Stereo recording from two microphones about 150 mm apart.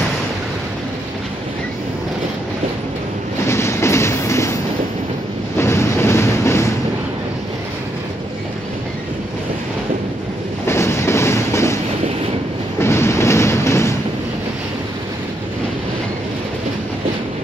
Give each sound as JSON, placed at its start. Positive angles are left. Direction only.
{"t": 3.4, "sound": "train", "side_deg": 20}
{"t": 5.6, "sound": "a sound", "side_deg": 15}
{"t": 10.7, "sound": "train", "side_deg": 15}
{"t": 12.8, "sound": "train", "side_deg": 15}